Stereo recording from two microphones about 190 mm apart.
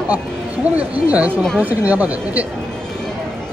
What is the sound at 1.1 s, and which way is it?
Speech, 10° right (ahead or behind).